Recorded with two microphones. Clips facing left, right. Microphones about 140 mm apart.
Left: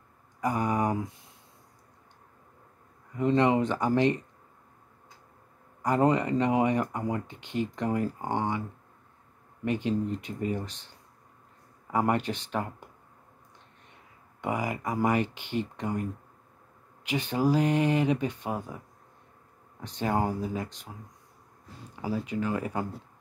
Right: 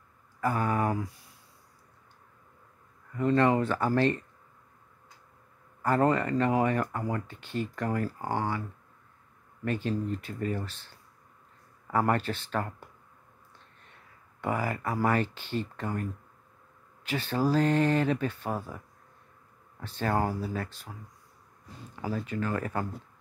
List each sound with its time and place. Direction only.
0.4 s a sound: 15° left (ahead or behind)
3.2 s speech: 20° left (ahead or behind)
5.8 s speech: 15° left (ahead or behind)
9.7 s speech: 15° left (ahead or behind)
14.4 s speech: 15° left (ahead or behind)
19.8 s speech: 15° left (ahead or behind)
22.0 s speech: 15° left (ahead or behind)